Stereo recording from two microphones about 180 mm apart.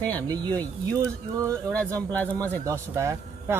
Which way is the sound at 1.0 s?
15° right (ahead or behind).